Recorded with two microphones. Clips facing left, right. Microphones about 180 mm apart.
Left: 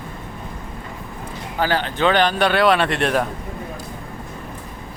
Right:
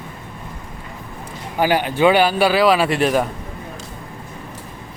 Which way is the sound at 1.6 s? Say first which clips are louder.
Right 4 dB; 10° right (ahead or behind).